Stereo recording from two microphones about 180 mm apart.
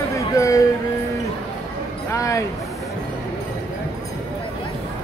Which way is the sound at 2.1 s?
15° left (ahead or behind).